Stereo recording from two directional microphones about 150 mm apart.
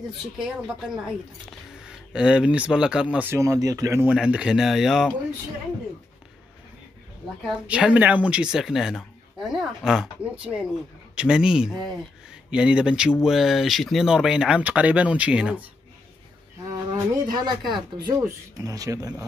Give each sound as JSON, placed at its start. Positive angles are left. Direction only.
{"t": 0.4, "sound": "speech", "side_deg": -5}
{"t": 3.3, "sound": "speech", "side_deg": -20}
{"t": 4.1, "sound": "speech", "side_deg": -5}
{"t": 7.6, "sound": "speech", "side_deg": -10}
{"t": 17.3, "sound": "speech", "side_deg": -30}